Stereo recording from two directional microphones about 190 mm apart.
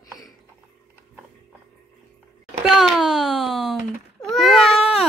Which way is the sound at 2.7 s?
Centre (ahead or behind).